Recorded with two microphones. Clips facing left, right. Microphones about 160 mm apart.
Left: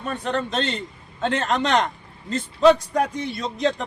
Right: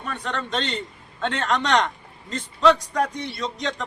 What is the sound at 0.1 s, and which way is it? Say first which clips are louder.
Speech: left 5 dB; 30° left (ahead or behind).